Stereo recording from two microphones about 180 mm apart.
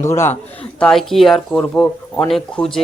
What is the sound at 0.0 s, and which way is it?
Speech, 15° left (ahead or behind).